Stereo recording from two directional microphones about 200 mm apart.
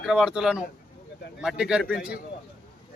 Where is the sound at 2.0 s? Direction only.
50° left (ahead or behind).